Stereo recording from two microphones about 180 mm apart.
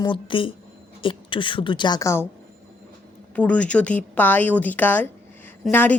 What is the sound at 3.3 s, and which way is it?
A woman's voice, 10° left (ahead or behind).